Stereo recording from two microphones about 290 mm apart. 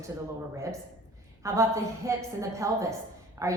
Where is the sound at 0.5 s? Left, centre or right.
Centre.